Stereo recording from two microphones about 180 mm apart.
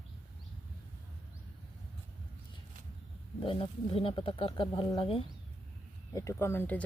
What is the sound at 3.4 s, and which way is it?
Speech, 30° left (ahead or behind).